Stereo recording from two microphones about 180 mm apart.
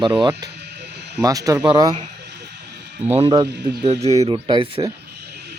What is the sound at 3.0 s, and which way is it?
Speech, 35° right (ahead or behind).